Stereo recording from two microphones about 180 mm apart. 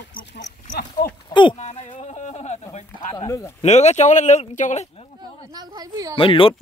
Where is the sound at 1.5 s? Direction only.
35° left (ahead or behind).